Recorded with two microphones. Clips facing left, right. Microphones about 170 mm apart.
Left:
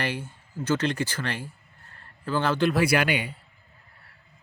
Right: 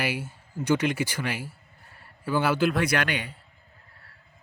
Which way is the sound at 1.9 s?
10° right (ahead or behind).